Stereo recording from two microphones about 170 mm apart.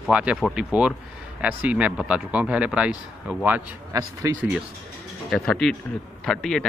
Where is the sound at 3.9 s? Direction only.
20° right (ahead or behind).